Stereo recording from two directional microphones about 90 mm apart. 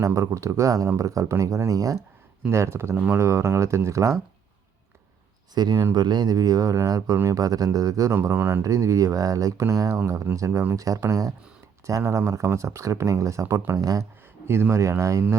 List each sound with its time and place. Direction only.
0.0 s speech: 35° right (ahead or behind)
5.5 s speech: 50° right (ahead or behind)
8.1 s speech: 30° right (ahead or behind)
14.4 s speech: 30° right (ahead or behind)